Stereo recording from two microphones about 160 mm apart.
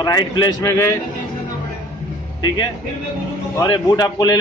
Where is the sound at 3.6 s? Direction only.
25° left (ahead or behind).